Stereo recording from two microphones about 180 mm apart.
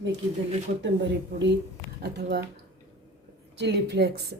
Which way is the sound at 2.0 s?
65° right (ahead or behind).